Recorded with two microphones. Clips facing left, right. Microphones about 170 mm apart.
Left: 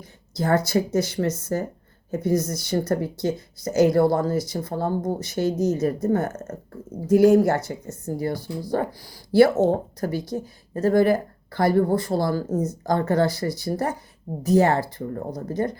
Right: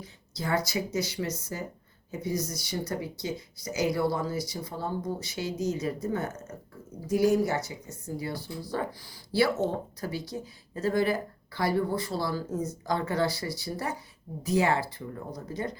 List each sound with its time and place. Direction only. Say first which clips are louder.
0.0 s speech: left 8 dB; 50° left (ahead or behind)